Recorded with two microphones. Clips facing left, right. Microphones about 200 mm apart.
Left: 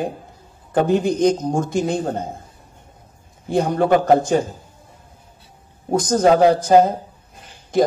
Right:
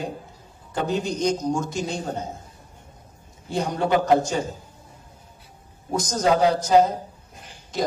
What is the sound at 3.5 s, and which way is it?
A man's voice, 55° left (ahead or behind).